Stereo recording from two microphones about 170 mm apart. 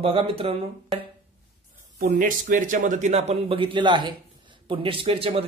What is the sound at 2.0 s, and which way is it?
Speech, 50° right (ahead or behind).